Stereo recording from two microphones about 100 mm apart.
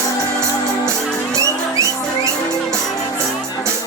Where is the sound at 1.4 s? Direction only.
30° right (ahead or behind).